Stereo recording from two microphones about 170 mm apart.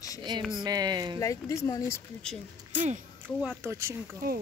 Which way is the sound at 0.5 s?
25° right (ahead or behind).